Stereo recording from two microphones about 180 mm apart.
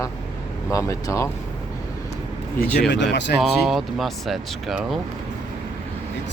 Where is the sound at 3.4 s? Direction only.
Centre (ahead or behind).